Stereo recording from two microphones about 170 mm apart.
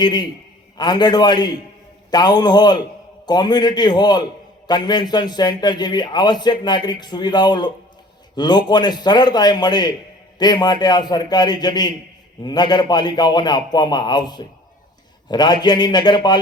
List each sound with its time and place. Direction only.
0.0 s a man's voice: 25° left (ahead or behind)